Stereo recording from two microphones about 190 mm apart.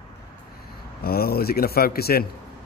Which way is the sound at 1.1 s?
55° left (ahead or behind).